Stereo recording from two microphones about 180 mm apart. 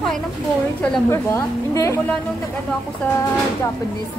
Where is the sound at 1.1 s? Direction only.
15° left (ahead or behind).